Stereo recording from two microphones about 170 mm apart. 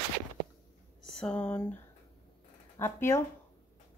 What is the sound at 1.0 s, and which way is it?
Speech, 5° left (ahead or behind).